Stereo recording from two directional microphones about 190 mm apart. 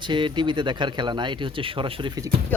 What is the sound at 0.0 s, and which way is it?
Speech, 25° right (ahead or behind).